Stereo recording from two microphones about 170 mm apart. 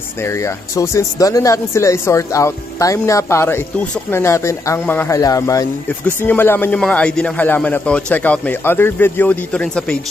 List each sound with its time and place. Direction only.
0.2 s speech: 15° left (ahead or behind)
5.9 s speech: 10° left (ahead or behind)